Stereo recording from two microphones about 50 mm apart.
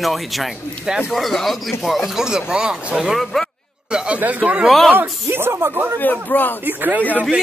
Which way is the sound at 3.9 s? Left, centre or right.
Right.